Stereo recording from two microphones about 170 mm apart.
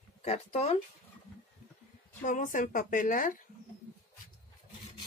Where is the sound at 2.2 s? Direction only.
50° left (ahead or behind).